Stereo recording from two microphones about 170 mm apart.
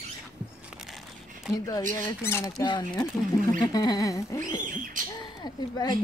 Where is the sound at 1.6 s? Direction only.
15° left (ahead or behind).